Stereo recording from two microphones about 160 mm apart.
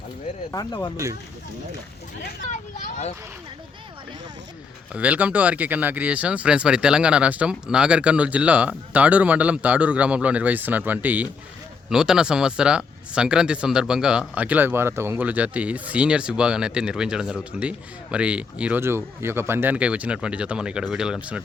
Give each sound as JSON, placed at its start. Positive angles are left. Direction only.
{"t": 0.5, "sound": "speech", "side_deg": 25}
{"t": 2.5, "sound": "speech", "side_deg": 50}
{"t": 4.9, "sound": "speech", "side_deg": -10}